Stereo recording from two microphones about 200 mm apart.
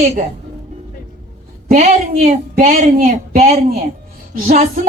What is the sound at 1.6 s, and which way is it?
Speech, 40° right (ahead or behind).